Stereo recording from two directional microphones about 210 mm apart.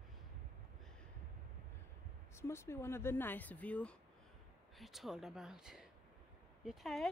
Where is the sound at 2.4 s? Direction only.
10° left (ahead or behind).